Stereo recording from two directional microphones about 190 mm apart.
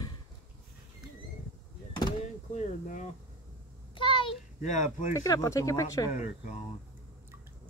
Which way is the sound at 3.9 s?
25° left (ahead or behind).